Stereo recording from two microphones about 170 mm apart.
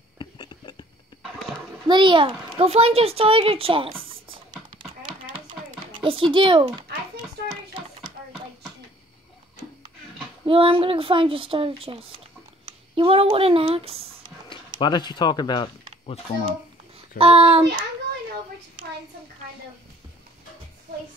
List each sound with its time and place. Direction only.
0.2 s a sound: 25° left (ahead or behind)
1.9 s a child's voice: 30° right (ahead or behind)
10.4 s speech: 30° right (ahead or behind)
14.5 s speech: 25° left (ahead or behind)
17.2 s speech: 35° right (ahead or behind)